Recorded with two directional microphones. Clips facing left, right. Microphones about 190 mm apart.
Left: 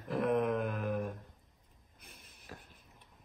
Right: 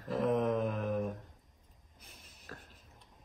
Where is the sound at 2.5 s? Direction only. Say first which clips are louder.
Right 1 dB; 15° left (ahead or behind).